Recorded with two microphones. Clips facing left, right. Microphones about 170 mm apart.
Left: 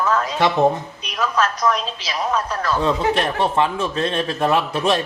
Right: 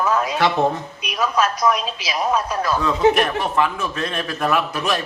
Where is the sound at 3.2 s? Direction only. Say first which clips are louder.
Even; 25° left (ahead or behind).